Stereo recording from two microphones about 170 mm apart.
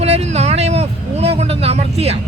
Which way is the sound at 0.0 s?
40° right (ahead or behind).